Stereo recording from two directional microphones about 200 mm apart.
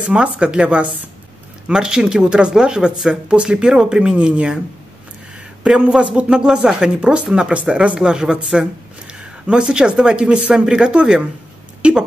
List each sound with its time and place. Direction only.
0.1 s speech: 5° right (ahead or behind)
5.6 s speech: 5° right (ahead or behind)